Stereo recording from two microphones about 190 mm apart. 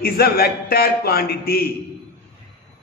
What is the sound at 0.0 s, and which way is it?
A man's voice, 55° left (ahead or behind).